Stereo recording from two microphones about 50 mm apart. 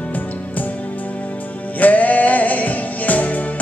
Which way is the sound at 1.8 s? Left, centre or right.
Left.